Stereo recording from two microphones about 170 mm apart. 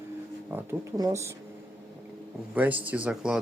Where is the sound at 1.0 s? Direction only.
15° right (ahead or behind).